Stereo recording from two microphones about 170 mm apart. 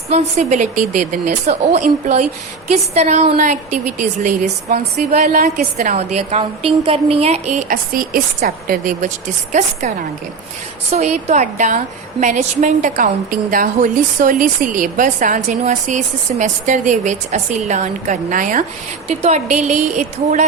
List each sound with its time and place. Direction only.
0.1 s a woman's voice: 45° right (ahead or behind)
5.1 s a woman's voice: 60° right (ahead or behind); by 7.6 s 40° right (ahead or behind)
7.7 s a woman's voice: 55° right (ahead or behind)
10.9 s a woman's voice: 40° right (ahead or behind)
19.0 s a woman's voice: 40° right (ahead or behind)